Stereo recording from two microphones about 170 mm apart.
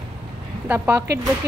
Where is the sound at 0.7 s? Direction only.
10° right (ahead or behind).